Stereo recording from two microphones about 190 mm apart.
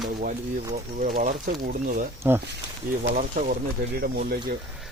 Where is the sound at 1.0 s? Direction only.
45° right (ahead or behind).